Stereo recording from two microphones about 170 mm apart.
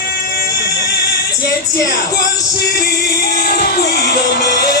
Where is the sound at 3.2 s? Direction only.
60° left (ahead or behind); by 4.8 s 85° left.